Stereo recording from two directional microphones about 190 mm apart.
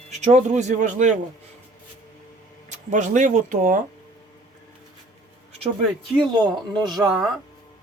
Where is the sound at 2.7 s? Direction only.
40° right (ahead or behind).